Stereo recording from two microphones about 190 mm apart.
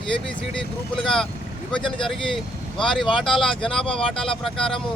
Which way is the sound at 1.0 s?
Centre (ahead or behind).